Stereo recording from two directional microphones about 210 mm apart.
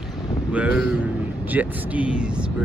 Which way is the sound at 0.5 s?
5° right (ahead or behind).